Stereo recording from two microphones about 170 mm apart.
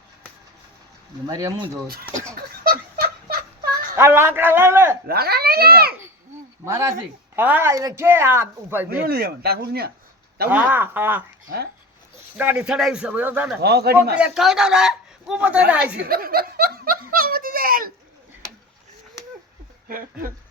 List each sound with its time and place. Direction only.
1.3 s speech: 20° right (ahead or behind)
2.3 s a sound: 60° right (ahead or behind)
3.9 s speech: 15° right (ahead or behind)
5.0 s speech: 65° right (ahead or behind)
6.7 s speech: 15° right (ahead or behind)
9.0 s speech: 65° right (ahead or behind)
10.5 s speech: 10° right (ahead or behind)
13.6 s a man's voice: 70° right (ahead or behind)
14.2 s a man's voice: 5° right (ahead or behind)
16.0 s snicker: 60° right (ahead or behind)
19.9 s speech: 55° right (ahead or behind)